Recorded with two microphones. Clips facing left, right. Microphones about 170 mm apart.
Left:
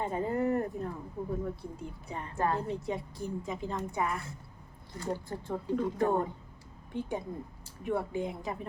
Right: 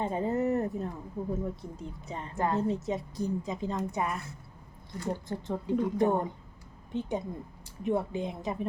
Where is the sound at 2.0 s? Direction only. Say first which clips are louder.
Right 1 dB; 20° right (ahead or behind).